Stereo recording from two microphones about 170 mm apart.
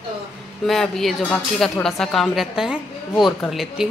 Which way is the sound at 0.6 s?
Centre (ahead or behind).